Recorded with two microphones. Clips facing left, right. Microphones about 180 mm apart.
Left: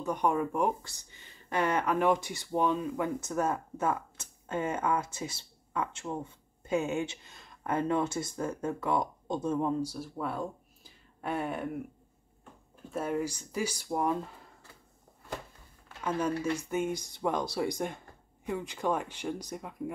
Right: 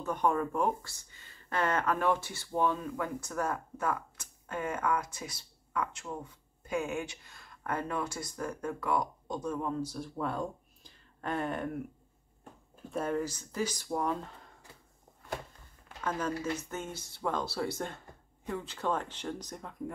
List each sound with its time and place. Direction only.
0.0 s speech: 15° left (ahead or behind)
12.9 s speech: 10° left (ahead or behind)
16.0 s speech: 10° left (ahead or behind)